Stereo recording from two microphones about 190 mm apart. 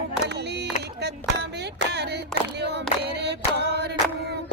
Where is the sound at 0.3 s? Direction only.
60° right (ahead or behind).